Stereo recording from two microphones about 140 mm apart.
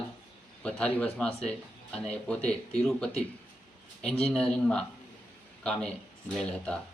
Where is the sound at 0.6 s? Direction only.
10° left (ahead or behind).